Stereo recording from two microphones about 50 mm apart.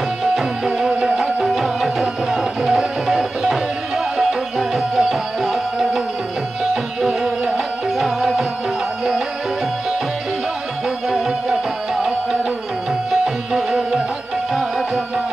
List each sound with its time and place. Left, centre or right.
0.7 s music: centre
1.1 s tabla: centre
4.2 s music: centre
11.1 s music: centre